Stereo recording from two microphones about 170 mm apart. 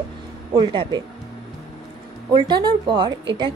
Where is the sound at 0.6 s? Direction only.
25° right (ahead or behind).